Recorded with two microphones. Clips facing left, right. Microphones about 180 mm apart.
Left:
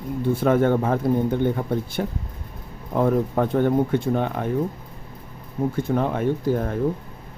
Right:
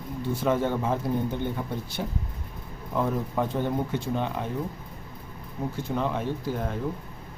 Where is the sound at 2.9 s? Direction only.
55° left (ahead or behind).